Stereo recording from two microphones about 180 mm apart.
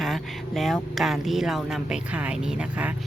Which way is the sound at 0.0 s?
Centre (ahead or behind).